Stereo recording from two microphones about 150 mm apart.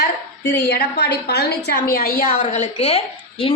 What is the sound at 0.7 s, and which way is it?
A woman's voice, 90° left.